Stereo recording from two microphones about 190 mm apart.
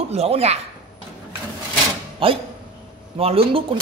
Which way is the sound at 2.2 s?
30° right (ahead or behind).